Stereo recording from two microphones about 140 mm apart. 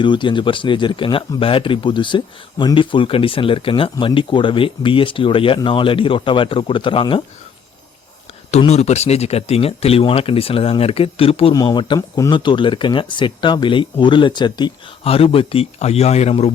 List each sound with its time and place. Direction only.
0.0 s a man's voice: 35° left (ahead or behind)
8.4 s speech: 50° left (ahead or behind)
11.5 s a man's voice: 30° left (ahead or behind); by 16.5 s 50° left (ahead or behind)